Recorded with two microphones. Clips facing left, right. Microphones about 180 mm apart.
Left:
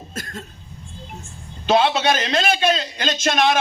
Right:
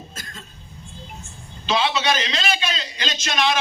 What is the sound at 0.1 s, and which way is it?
Cough, 60° left (ahead or behind).